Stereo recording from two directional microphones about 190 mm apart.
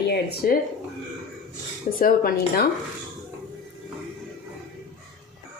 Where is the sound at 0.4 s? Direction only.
50° left (ahead or behind).